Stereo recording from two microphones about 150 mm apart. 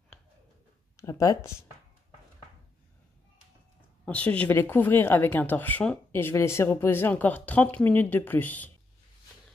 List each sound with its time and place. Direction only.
0.9 s speech: 20° left (ahead or behind)
4.0 s speech: 10° left (ahead or behind)